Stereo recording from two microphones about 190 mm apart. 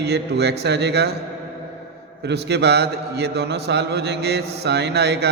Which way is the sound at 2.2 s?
60° right (ahead or behind).